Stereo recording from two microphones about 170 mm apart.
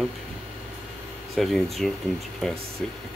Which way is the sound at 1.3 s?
Centre (ahead or behind).